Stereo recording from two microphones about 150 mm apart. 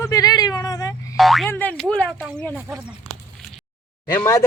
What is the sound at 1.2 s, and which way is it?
Speech, centre (ahead or behind).